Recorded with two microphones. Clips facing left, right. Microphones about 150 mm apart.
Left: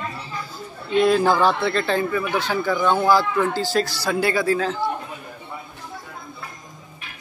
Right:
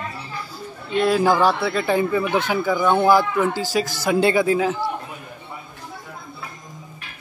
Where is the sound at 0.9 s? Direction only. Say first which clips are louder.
Even; 5° right (ahead or behind).